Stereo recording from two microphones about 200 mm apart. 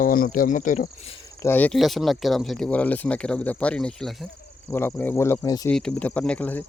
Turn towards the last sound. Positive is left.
turn(degrees=5)  # may be behind; listen again after turning